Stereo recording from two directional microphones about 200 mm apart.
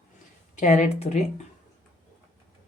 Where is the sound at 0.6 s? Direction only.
35° left (ahead or behind).